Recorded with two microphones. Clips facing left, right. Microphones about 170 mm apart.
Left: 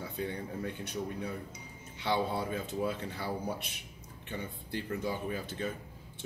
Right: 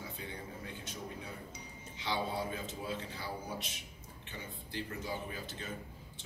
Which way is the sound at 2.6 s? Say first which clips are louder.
Left 6 dB; 60° left (ahead or behind).